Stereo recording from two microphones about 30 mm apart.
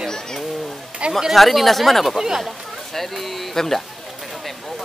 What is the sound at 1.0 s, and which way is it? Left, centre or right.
Speech, right.